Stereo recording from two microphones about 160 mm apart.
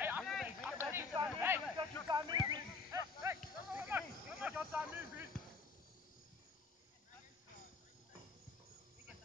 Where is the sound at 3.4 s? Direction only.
10° right (ahead or behind).